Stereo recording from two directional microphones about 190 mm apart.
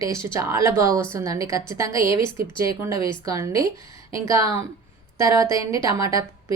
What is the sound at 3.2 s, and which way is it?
Speech, 15° right (ahead or behind).